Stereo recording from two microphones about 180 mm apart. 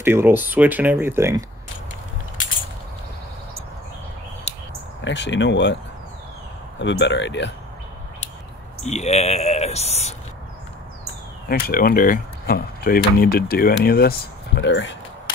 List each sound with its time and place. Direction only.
0.0 s speech: 10° right (ahead or behind)
5.0 s speech: 80° left
6.8 s speech: 80° left
8.8 s speech: 40° left (ahead or behind)
11.4 s speech: 55° left (ahead or behind); by 15.0 s 85° left